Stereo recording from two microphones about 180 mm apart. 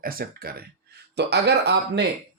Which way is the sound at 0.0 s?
55° right (ahead or behind).